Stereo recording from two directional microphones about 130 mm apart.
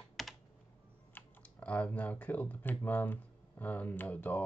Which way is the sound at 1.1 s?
10° left (ahead or behind).